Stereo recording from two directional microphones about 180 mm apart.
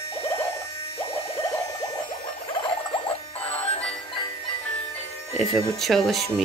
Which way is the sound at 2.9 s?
35° left (ahead or behind).